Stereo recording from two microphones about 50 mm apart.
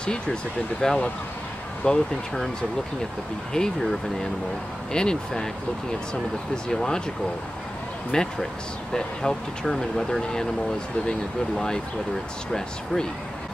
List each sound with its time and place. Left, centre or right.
0.0 s speech: centre
3.5 s speech: centre
6.5 s speech: centre
8.1 s speech: centre